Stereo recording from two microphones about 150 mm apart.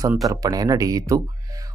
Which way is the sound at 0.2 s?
25° right (ahead or behind).